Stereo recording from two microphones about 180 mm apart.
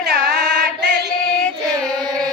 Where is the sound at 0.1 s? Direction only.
65° right (ahead or behind).